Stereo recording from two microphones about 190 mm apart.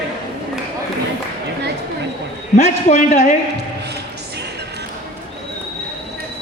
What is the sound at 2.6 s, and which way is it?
Speech, 45° left (ahead or behind).